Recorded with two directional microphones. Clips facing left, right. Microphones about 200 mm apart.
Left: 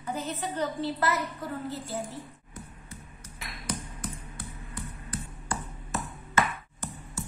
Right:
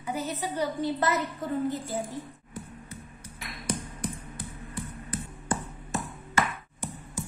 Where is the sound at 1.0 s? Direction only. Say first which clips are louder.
Right 2 dB; 20° right (ahead or behind).